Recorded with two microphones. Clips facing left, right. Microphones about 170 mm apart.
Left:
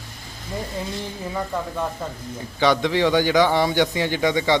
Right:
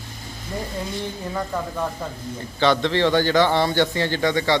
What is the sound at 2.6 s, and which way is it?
A man's voice, 10° left (ahead or behind).